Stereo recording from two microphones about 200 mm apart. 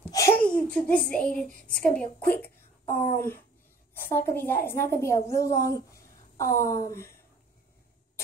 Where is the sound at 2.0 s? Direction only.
5° left (ahead or behind).